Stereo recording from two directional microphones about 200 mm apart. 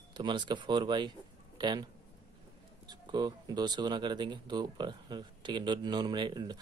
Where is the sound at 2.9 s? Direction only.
20° right (ahead or behind).